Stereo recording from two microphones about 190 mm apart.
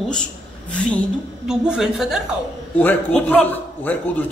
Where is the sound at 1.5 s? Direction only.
Centre (ahead or behind).